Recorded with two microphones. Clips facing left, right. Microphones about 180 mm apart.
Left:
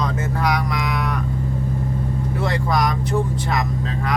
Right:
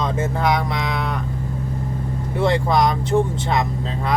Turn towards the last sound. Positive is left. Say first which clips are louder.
# right 3 dB
turn(degrees=-25)  # may be behind; listen again after turning